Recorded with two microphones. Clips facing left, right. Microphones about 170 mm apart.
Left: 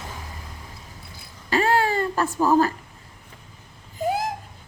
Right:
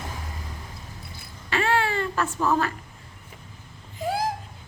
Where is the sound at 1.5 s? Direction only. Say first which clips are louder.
Left 3 dB; 40° left (ahead or behind).